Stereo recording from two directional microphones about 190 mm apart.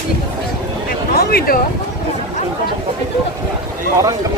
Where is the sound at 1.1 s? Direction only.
50° left (ahead or behind).